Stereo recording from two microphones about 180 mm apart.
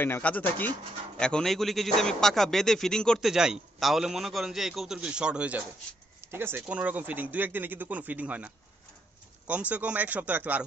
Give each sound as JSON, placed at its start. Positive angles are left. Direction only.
{"t": 0.0, "sound": "speech", "side_deg": 10}
{"t": 9.5, "sound": "speech", "side_deg": -10}